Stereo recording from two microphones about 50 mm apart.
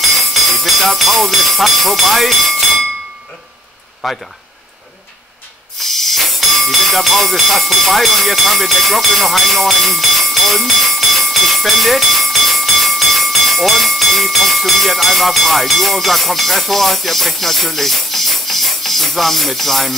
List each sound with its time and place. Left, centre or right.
0.2 s speech: centre
4.0 s speech: centre
5.8 s speech: centre